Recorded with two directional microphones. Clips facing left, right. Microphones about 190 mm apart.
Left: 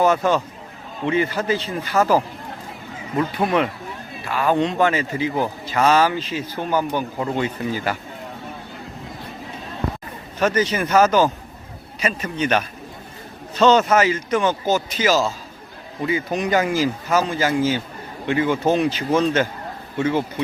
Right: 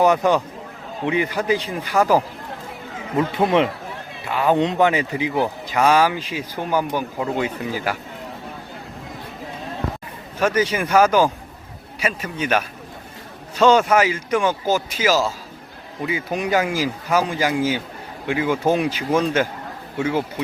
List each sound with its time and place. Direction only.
0.0 s speech: 15° right (ahead or behind)
10.4 s speech: 10° right (ahead or behind)